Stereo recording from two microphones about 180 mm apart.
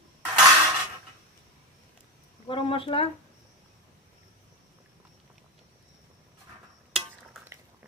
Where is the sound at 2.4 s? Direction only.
30° left (ahead or behind).